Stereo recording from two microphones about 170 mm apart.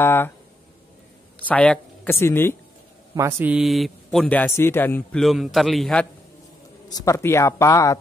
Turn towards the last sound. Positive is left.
turn(degrees=20)  # may be behind; listen again after turning